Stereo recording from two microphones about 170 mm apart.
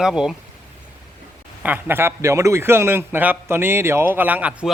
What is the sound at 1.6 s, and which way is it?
A man's voice, 10° right (ahead or behind).